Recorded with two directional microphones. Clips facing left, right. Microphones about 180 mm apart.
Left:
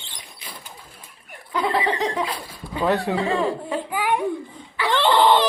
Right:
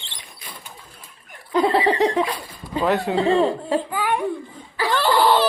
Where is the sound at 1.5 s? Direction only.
25° right (ahead or behind).